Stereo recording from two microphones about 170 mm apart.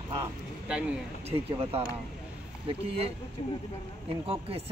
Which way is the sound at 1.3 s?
35° right (ahead or behind).